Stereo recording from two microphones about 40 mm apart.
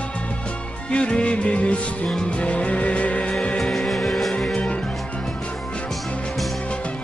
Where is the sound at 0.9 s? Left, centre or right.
Left.